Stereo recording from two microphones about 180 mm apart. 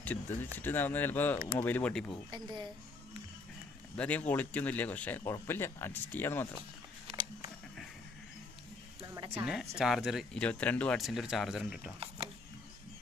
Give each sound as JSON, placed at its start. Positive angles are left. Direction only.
{"t": 0.0, "sound": "speech", "side_deg": 10}
{"t": 2.3, "sound": "speech", "side_deg": -25}
{"t": 3.9, "sound": "speech", "side_deg": 5}
{"t": 7.1, "sound": "a sound", "side_deg": -35}
{"t": 9.0, "sound": "speech", "side_deg": -20}